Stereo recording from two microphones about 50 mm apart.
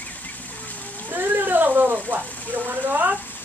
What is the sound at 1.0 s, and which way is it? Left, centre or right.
Cat, right.